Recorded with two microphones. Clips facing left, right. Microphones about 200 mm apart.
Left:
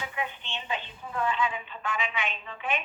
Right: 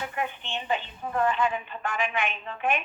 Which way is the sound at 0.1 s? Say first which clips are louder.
Right 3 dB; 50° right (ahead or behind).